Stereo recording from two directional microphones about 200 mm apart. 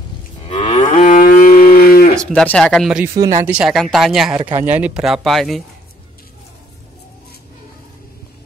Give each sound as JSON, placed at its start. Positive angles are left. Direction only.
{"t": 0.5, "sound": "moo", "side_deg": 25}
{"t": 0.8, "sound": "moo", "side_deg": 40}
{"t": 2.3, "sound": "speech", "side_deg": 5}
{"t": 3.2, "sound": "speech", "side_deg": -15}
{"t": 3.5, "sound": "speech", "side_deg": 0}